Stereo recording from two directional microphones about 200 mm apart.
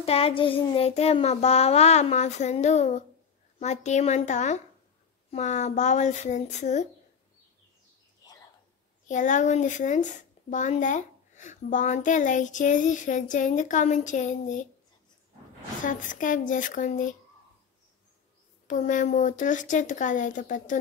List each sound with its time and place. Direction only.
0.0 s speech: 30° left (ahead or behind)
9.0 s speech: 40° left (ahead or behind)
15.8 s speech: 40° left (ahead or behind)
18.7 s speech: 40° left (ahead or behind)